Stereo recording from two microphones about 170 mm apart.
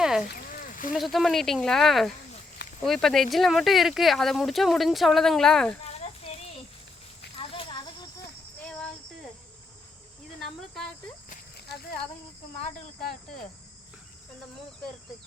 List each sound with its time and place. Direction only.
0.0 s rowboat: 5° right (ahead or behind)
0.3 s rowboat: 55° left (ahead or behind)
0.9 s speech: centre (ahead or behind)
5.8 s a sound: 35° left (ahead or behind)
7.3 s snake: 30° left (ahead or behind)
11.3 s a sound: 65° left (ahead or behind)